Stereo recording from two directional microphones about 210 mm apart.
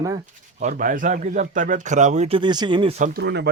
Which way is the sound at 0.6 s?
40° right (ahead or behind).